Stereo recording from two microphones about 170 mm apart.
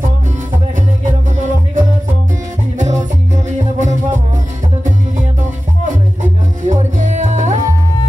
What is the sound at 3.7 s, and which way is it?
Music, 45° right (ahead or behind).